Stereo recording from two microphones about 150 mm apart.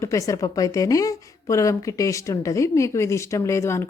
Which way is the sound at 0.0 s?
20° left (ahead or behind).